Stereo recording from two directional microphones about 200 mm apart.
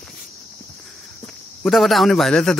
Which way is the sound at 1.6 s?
Centre (ahead or behind).